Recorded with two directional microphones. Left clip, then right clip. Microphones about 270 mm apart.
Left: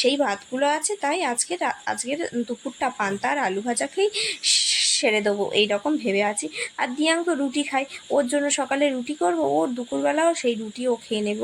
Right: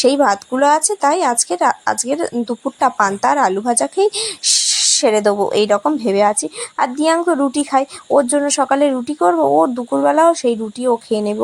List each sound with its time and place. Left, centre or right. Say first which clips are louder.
0.0 s a woman's voice: right 9 dB; centre